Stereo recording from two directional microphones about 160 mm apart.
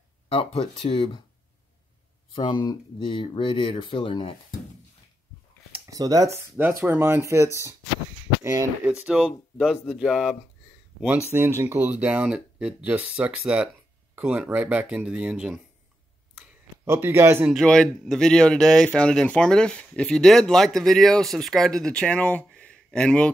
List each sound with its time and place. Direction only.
0.3 s speech: 40° left (ahead or behind)
2.3 s speech: 25° left (ahead or behind)
5.9 s speech: 20° right (ahead or behind)
8.8 s speech: 5° right (ahead or behind)
11.3 s speech: 15° right (ahead or behind)
16.8 s speech: 15° right (ahead or behind)
17.6 s speech: 5° left (ahead or behind)